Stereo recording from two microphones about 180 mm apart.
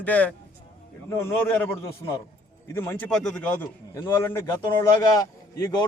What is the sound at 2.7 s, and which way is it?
A man's voice, 10° left (ahead or behind).